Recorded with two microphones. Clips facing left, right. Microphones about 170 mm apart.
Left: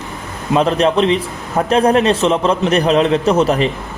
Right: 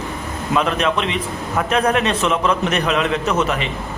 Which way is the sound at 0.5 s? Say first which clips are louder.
Left 5 dB; 30° left (ahead or behind).